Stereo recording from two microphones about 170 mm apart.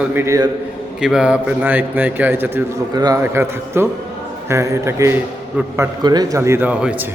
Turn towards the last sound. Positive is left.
turn(degrees=-5)  # may be behind; listen again after turning